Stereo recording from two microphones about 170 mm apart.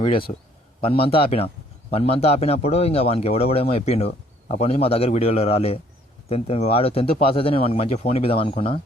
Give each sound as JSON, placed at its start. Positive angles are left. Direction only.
{"t": 0.0, "sound": "a man's voice", "side_deg": 30}